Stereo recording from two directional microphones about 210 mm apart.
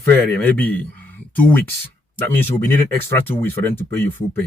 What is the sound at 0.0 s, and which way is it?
Speech, 10° left (ahead or behind).